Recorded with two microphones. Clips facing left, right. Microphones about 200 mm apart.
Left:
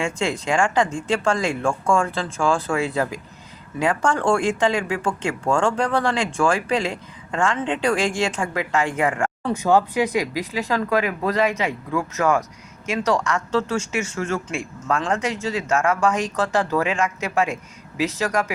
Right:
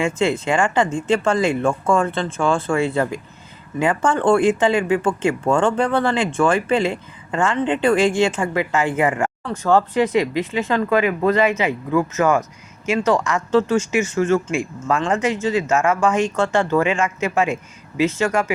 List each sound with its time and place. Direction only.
0.0 s speech: 5° right (ahead or behind)
9.4 s speech: 15° left (ahead or behind)
9.7 s speech: centre (ahead or behind)